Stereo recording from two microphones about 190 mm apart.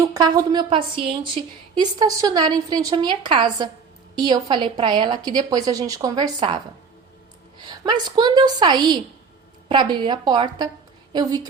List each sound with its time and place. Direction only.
0.1 s a woman's voice: 20° right (ahead or behind)
7.6 s a woman's voice: 25° right (ahead or behind)